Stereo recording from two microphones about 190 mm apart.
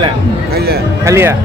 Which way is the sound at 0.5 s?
55° right (ahead or behind).